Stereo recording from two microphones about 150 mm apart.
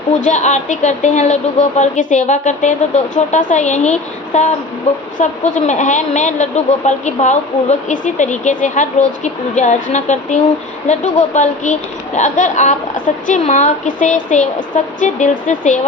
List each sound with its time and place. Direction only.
0.1 s a woman's voice: 50° left (ahead or behind)